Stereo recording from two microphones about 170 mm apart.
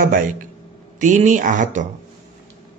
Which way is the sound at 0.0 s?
55° right (ahead or behind).